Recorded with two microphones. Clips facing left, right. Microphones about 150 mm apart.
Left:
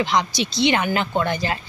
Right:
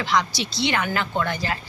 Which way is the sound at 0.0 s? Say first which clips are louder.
Left 2 dB; 20° left (ahead or behind).